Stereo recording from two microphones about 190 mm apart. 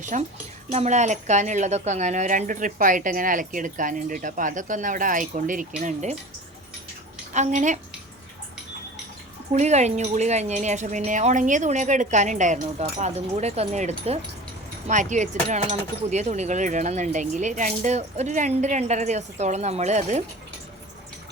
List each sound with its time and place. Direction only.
0.0 s a woman's voice: 40° right (ahead or behind)
7.3 s speech: 40° right (ahead or behind)
9.5 s speech: 35° right (ahead or behind)